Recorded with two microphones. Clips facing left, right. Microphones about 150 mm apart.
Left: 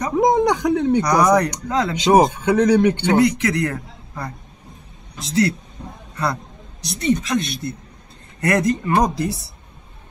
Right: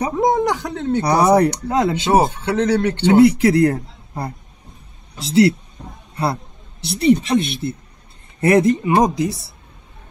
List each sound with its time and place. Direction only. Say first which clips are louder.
0.1 s a sound: left 4 dB; 15° left (ahead or behind)
1.0 s speech: right 2 dB; 30° right (ahead or behind)
2.0 s speech: left 2 dB; 15° left (ahead or behind)
3.2 s a man's voice: right 6 dB; 30° right (ahead or behind)
6.8 s a man's voice: right 5 dB; 30° right (ahead or behind)